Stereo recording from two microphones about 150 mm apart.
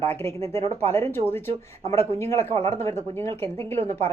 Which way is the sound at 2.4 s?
40° right (ahead or behind).